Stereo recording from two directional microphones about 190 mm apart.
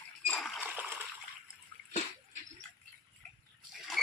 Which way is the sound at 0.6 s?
10° right (ahead or behind).